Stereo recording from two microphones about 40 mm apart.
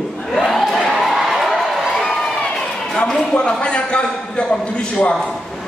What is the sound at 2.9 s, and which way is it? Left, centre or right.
A man's voice, left.